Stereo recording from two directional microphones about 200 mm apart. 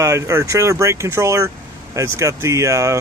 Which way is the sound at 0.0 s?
15° right (ahead or behind).